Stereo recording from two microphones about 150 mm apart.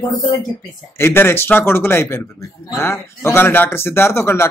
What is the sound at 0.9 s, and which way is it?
Speech, 15° left (ahead or behind).